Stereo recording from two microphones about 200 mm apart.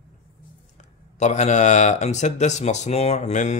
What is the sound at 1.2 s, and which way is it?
Speech, 35° left (ahead or behind).